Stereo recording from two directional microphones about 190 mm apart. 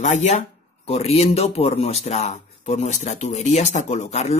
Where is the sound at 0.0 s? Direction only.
40° left (ahead or behind).